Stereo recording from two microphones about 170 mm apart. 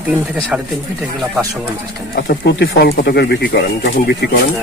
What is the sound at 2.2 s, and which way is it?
Speech, 80° left.